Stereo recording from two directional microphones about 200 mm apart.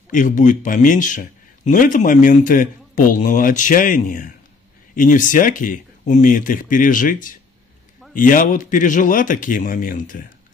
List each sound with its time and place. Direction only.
0.1 s a man's voice: 40° left (ahead or behind)